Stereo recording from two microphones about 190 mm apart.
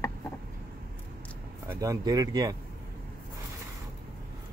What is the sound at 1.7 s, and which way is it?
Speech, 15° right (ahead or behind).